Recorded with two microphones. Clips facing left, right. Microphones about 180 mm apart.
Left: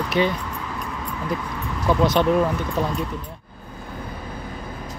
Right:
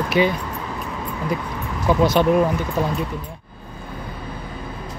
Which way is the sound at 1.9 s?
5° right (ahead or behind).